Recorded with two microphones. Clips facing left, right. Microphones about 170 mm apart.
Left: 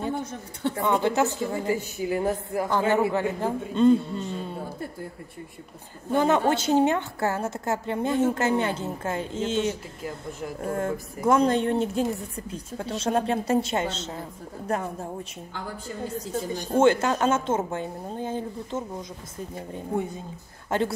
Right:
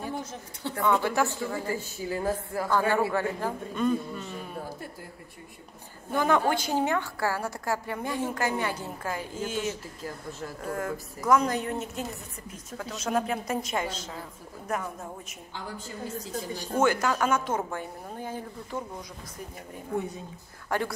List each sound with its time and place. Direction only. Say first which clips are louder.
0.7 s a woman's voice: left 1 dB; 20° left (ahead or behind)
6.1 s a woman's voice: left 3 dB; 20° left (ahead or behind)
16.7 s a woman's voice: left 5 dB; 25° left (ahead or behind)